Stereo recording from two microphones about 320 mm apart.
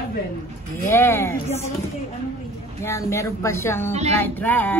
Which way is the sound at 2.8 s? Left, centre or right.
Centre.